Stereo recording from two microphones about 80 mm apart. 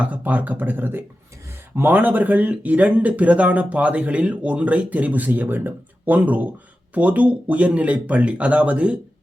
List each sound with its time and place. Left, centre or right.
0.0 s speech: centre